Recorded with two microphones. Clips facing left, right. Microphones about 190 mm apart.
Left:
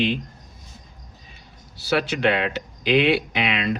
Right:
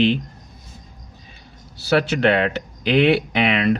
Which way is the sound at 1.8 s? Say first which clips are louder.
Right 4 dB; 60° right (ahead or behind).